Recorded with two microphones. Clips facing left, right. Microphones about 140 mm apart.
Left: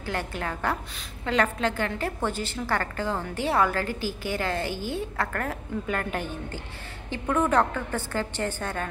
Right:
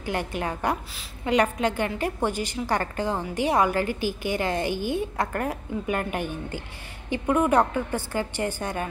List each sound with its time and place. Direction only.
0.0 s a woman's voice: 15° right (ahead or behind)